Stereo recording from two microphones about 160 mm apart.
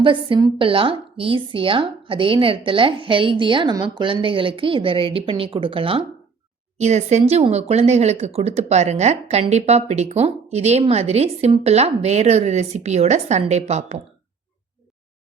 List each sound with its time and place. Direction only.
0.0 s speech: 30° right (ahead or behind)
6.7 s speech: 45° right (ahead or behind)